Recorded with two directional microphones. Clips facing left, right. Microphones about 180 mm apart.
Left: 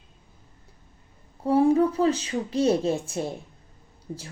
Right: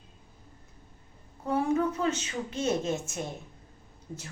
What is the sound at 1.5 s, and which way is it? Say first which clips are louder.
Speech: left 7 dB; 30° left (ahead or behind).